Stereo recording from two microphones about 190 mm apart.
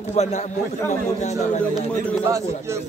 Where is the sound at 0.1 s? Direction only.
35° left (ahead or behind).